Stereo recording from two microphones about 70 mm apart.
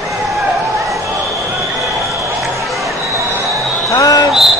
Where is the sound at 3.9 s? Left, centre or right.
Left.